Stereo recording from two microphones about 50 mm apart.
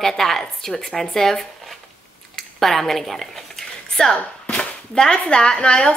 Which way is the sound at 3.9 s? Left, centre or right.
Centre.